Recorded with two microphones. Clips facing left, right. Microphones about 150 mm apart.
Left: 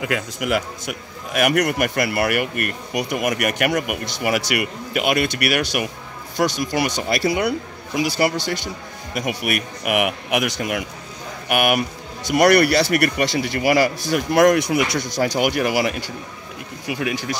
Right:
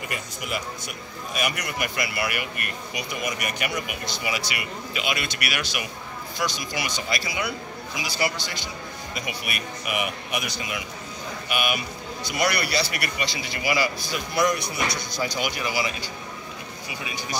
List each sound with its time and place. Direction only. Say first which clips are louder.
0.0 s a man's voice: left 9 dB; 90° left; by 3.1 s 55° left (ahead or behind)
3.1 s a man's voice: left 8 dB; 65° left (ahead or behind)
16.8 s speech: left 12 dB; 85° left